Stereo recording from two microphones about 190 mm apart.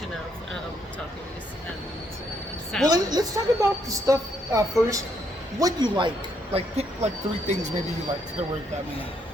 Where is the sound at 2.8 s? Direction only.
20° right (ahead or behind).